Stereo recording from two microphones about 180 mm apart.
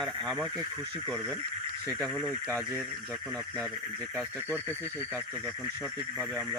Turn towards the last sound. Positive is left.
turn(degrees=-10)  # may be behind; listen again after turning